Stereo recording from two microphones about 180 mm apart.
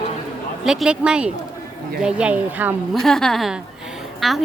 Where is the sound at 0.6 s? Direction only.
5° right (ahead or behind).